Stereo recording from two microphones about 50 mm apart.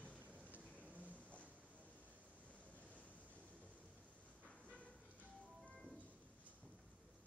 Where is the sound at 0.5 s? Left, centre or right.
Right.